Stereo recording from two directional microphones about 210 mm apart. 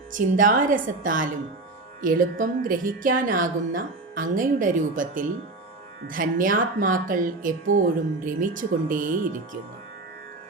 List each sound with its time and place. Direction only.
0.1 s a woman's voice: 40° right (ahead or behind)